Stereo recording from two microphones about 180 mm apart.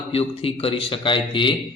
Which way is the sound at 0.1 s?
35° left (ahead or behind).